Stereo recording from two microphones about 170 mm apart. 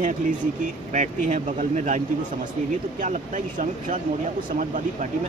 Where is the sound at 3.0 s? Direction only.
50° right (ahead or behind).